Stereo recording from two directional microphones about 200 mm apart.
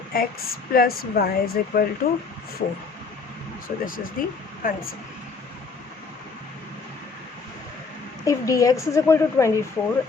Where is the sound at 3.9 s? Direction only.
45° left (ahead or behind).